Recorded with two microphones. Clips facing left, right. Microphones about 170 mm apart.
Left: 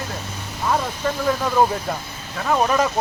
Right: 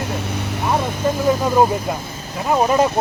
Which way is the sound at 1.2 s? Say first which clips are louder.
Right 3 dB; 15° right (ahead or behind).